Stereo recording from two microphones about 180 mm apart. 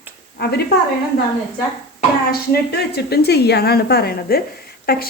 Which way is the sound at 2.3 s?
65° left (ahead or behind).